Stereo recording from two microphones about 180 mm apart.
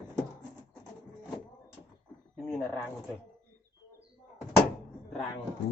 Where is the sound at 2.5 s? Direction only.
5° left (ahead or behind).